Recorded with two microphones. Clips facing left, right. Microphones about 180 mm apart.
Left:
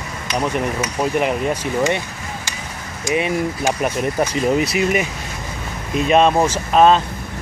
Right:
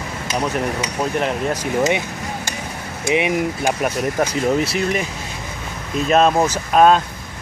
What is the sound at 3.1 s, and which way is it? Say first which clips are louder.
Speech: right 1 dB; 15° right (ahead or behind).